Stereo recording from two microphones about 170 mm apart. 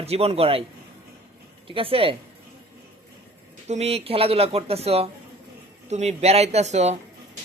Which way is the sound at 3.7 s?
40° right (ahead or behind).